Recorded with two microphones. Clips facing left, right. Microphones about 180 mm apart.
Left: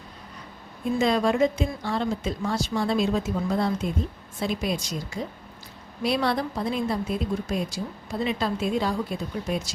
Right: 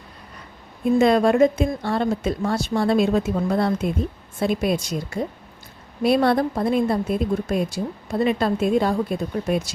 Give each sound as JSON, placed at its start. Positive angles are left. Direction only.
{"t": 0.9, "sound": "a woman's voice", "side_deg": -55}